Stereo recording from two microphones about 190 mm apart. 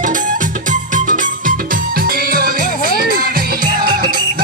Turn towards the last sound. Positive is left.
turn(degrees=-50)  # may be behind; listen again after turning